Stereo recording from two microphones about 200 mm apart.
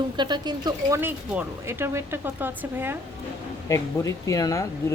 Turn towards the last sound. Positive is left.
turn(degrees=15)  # may be behind; listen again after turning